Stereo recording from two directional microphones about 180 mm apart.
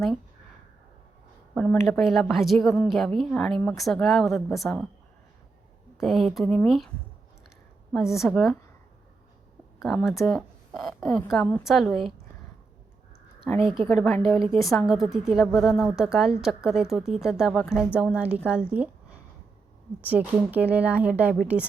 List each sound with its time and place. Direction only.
1.5 s speech: 10° left (ahead or behind)
6.0 s speech: centre (ahead or behind)
7.9 s speech: centre (ahead or behind)
9.8 s a woman's voice: centre (ahead or behind)
13.8 s speech: 5° left (ahead or behind)
18.7 s a sound: 10° right (ahead or behind)
20.0 s speech: 10° right (ahead or behind)